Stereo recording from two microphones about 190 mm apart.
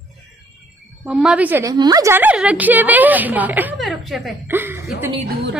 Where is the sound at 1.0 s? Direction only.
5° right (ahead or behind).